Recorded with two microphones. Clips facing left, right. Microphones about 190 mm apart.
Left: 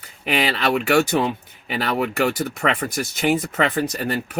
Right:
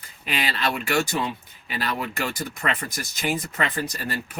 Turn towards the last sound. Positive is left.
turn(degrees=60)  # may be behind; listen again after turning